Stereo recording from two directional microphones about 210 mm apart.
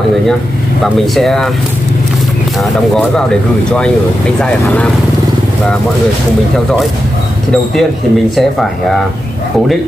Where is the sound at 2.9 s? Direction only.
5° left (ahead or behind).